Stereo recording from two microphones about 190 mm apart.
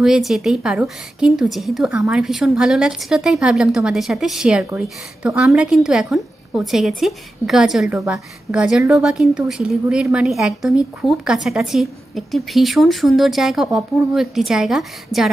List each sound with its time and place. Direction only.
0.0 s a woman's voice: centre (ahead or behind)